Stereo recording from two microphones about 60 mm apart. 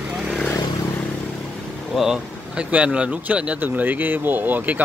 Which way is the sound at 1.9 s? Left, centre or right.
Centre.